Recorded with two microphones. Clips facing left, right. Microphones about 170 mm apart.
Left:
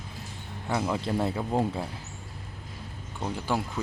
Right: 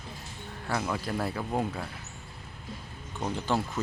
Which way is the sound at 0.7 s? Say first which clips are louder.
Left 3 dB; 20° left (ahead or behind).